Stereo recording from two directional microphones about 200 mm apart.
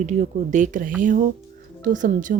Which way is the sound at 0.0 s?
35° right (ahead or behind).